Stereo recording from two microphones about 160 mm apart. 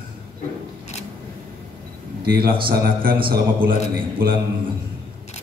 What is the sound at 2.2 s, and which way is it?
A man's voice, 75° right (ahead or behind).